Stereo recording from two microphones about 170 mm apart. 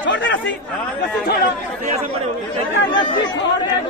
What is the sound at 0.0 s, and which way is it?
Chatter, 90° left.